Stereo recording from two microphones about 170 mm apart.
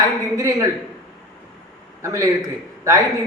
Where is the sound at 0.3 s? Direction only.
20° right (ahead or behind).